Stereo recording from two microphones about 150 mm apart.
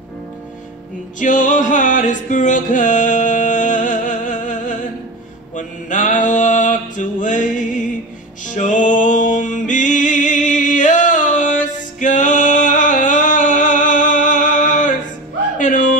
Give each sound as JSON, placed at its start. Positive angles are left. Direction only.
{"t": 1.2, "sound": "music", "side_deg": 60}
{"t": 5.6, "sound": "mantra", "side_deg": 55}
{"t": 8.5, "sound": "music", "side_deg": 55}
{"t": 15.5, "sound": "a sound", "side_deg": 60}